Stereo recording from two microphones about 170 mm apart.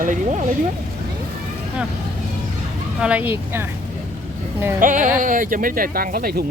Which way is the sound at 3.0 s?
10° right (ahead or behind).